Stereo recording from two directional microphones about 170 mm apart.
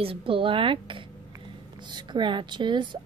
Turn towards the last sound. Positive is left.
turn(degrees=-25)  # may be behind; listen again after turning